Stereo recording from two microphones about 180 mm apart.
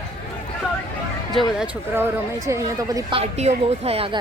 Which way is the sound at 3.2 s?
35° right (ahead or behind).